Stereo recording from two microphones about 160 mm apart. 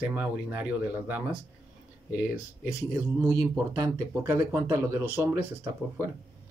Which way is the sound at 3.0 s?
20° right (ahead or behind).